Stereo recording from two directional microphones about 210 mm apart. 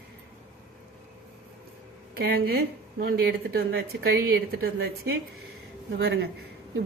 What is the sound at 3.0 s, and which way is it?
Speech, 50° right (ahead or behind).